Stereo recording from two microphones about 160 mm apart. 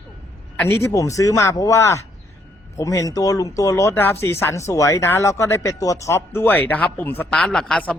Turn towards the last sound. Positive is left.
turn(degrees=5)  # may be behind; listen again after turning